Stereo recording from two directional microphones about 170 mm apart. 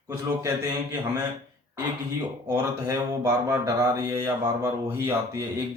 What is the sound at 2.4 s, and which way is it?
Mantra, 20° right (ahead or behind).